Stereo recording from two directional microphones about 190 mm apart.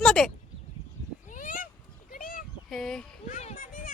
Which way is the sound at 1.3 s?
45° left (ahead or behind).